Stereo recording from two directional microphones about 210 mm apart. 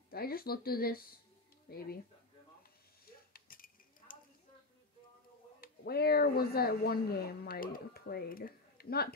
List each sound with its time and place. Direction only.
0.1 s speech: 45° left (ahead or behind)
3.3 s a sound: 45° left (ahead or behind)
5.6 s speech: 50° left (ahead or behind)